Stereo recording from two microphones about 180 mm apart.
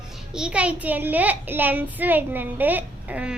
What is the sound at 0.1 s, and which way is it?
A child's voice, 5° right (ahead or behind).